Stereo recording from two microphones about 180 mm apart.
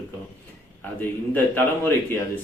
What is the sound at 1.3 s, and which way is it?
Speech, 10° left (ahead or behind).